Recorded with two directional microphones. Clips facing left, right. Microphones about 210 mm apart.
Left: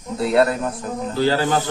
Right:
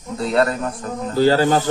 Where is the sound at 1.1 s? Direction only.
40° right (ahead or behind).